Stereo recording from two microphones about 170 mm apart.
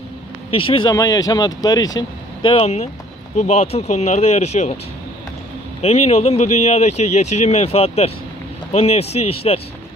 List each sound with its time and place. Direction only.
0.5 s speech: 30° left (ahead or behind)
5.8 s speech: 40° left (ahead or behind)